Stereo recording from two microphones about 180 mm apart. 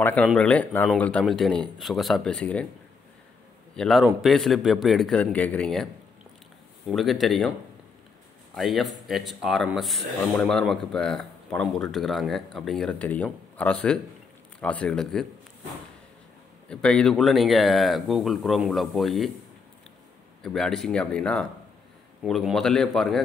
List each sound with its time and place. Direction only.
0.0 s a man's voice: 5° left (ahead or behind)
3.7 s speech: centre (ahead or behind)
6.9 s speech: centre (ahead or behind)
8.5 s speech: centre (ahead or behind)
16.6 s speech: 5° left (ahead or behind)
20.4 s speech: 5° left (ahead or behind)